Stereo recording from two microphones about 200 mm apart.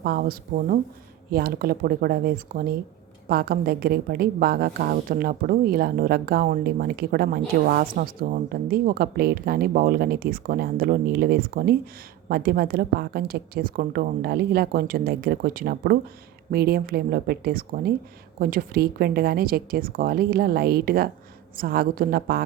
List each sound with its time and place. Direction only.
0.0 s a woman's voice: 50° right (ahead or behind)